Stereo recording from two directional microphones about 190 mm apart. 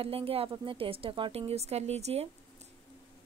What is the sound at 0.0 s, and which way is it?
A woman's voice, 30° right (ahead or behind).